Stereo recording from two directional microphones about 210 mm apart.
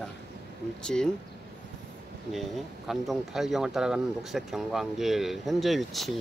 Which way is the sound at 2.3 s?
Centre (ahead or behind).